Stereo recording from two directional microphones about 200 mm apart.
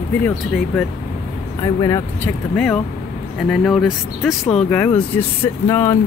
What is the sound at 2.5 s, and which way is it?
Speech, 5° left (ahead or behind).